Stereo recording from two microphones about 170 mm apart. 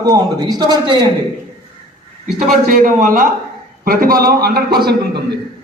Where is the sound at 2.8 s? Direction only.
55° right (ahead or behind).